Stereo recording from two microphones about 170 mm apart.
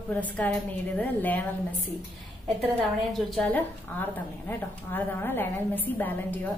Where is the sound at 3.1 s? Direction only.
Centre (ahead or behind).